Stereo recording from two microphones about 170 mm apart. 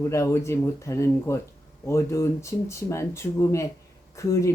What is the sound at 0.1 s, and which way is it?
Speech, 15° left (ahead or behind).